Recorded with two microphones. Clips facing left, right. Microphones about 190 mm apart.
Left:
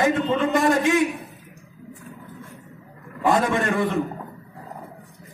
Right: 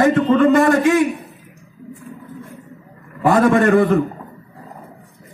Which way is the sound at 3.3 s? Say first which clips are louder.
Right 8 dB; 60° right (ahead or behind).